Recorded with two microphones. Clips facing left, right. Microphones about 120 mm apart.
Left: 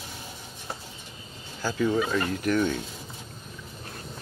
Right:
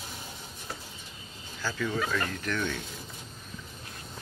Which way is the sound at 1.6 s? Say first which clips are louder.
Left 6 dB; 20° left (ahead or behind).